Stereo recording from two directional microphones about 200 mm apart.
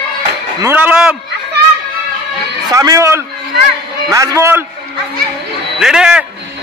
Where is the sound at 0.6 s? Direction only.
10° right (ahead or behind).